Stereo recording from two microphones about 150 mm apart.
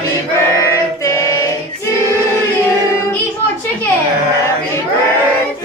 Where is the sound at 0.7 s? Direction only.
20° left (ahead or behind).